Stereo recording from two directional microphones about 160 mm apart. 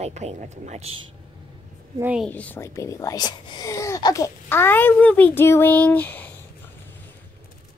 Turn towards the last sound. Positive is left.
turn(degrees=10)  # may be behind; listen again after turning